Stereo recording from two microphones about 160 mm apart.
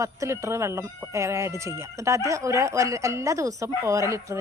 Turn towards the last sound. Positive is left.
turn(degrees=-20)  # may be behind; listen again after turning